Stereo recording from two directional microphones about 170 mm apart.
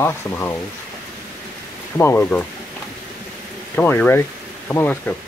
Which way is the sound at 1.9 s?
10° left (ahead or behind).